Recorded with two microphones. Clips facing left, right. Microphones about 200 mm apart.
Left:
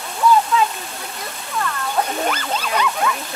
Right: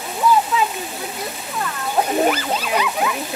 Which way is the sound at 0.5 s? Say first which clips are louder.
Left 1 dB; 5° right (ahead or behind).